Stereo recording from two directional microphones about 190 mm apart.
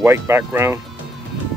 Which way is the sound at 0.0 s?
15° right (ahead or behind).